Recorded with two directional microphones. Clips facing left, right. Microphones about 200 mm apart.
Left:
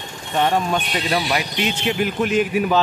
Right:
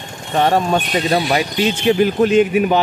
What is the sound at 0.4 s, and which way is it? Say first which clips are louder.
Speech: right 4 dB; 45° right (ahead or behind).